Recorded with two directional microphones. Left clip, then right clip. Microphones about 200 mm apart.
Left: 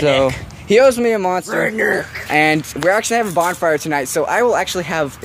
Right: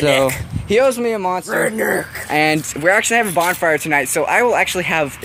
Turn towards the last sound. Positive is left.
turn(degrees=0)  # may be behind; listen again after turning